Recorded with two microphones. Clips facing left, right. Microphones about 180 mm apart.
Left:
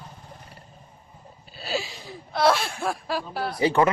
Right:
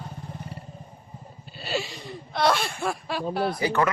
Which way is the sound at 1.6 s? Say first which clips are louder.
Even; centre (ahead or behind).